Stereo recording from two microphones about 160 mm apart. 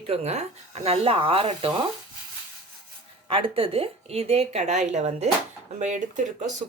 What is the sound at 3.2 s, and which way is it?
Speech, 35° right (ahead or behind).